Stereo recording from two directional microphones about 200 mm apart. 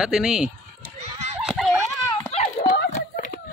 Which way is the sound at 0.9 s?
30° right (ahead or behind).